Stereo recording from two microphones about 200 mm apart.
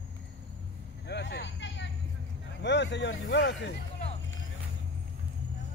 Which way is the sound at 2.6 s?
60° left (ahead or behind).